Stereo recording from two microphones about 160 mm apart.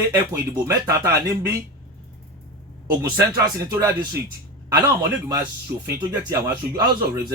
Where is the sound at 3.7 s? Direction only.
15° right (ahead or behind).